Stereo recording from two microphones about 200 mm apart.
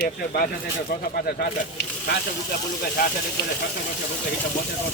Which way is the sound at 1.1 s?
50° left (ahead or behind).